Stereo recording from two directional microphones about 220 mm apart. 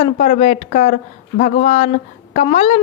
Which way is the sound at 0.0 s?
30° left (ahead or behind).